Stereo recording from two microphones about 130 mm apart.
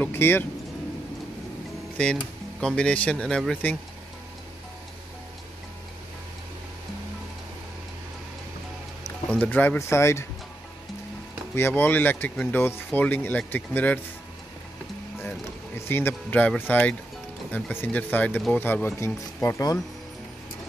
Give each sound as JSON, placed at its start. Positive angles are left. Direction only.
{"t": 0.0, "sound": "speech", "side_deg": 15}
{"t": 2.6, "sound": "speech", "side_deg": 5}
{"t": 9.4, "sound": "speech", "side_deg": 15}
{"t": 11.5, "sound": "speech", "side_deg": 15}
{"t": 15.8, "sound": "speech", "side_deg": 15}